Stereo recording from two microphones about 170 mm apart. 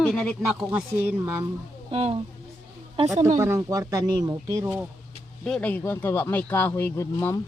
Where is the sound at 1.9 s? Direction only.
35° right (ahead or behind).